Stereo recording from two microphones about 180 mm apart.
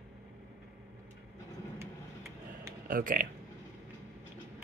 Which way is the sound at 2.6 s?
50° right (ahead or behind).